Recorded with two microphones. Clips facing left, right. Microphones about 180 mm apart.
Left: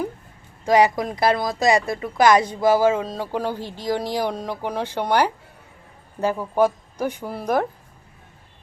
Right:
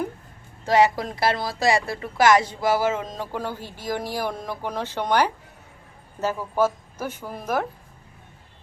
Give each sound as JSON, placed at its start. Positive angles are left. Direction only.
{"t": 0.6, "sound": "speech", "side_deg": 15}